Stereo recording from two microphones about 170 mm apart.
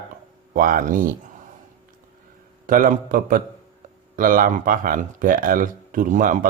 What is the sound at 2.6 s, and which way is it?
Speech, 55° right (ahead or behind).